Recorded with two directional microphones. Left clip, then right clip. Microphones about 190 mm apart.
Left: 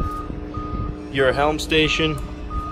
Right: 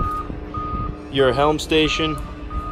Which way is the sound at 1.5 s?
15° right (ahead or behind).